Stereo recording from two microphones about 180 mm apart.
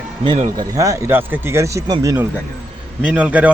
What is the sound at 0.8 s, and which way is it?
Speech, 15° right (ahead or behind).